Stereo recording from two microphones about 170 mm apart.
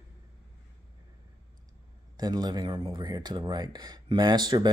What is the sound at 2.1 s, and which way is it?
Speech, 25° right (ahead or behind).